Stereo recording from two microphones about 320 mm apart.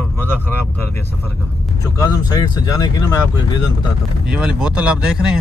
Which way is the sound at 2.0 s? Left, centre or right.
Centre.